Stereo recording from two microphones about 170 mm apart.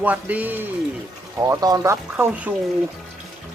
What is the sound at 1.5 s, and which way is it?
Speech, 20° right (ahead or behind).